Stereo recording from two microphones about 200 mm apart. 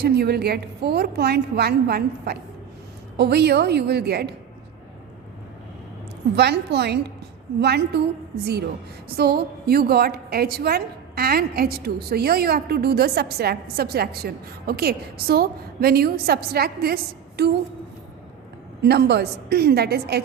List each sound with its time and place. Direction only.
0.0 s a woman's voice: 55° right (ahead or behind)
6.3 s a woman's voice: 55° right (ahead or behind)
9.0 s a woman's voice: 50° right (ahead or behind)
18.8 s a woman's voice: 55° right (ahead or behind)